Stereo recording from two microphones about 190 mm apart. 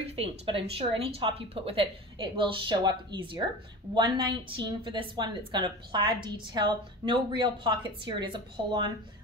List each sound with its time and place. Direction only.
0.1 s a woman's voice: 30° right (ahead or behind)